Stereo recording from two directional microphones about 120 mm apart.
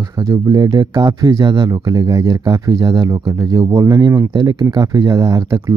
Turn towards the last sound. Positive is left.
turn(degrees=-30)  # may be behind; listen again after turning